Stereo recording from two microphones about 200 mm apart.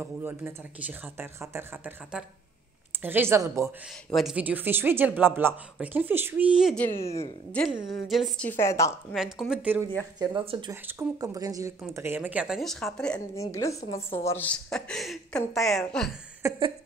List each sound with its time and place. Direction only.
0.0 s speech: 10° right (ahead or behind)
4.1 s speech: centre (ahead or behind)
6.9 s speech: 30° left (ahead or behind)
7.5 s a woman's voice: centre (ahead or behind)
9.1 s a woman's voice: centre (ahead or behind)
10.1 s speech: 25° right (ahead or behind)
10.7 s a woman's voice: 15° right (ahead or behind); by 13.2 s 5° left (ahead or behind)
13.4 s a woman's voice: 15° left (ahead or behind)
16.4 s speech: 25° right (ahead or behind)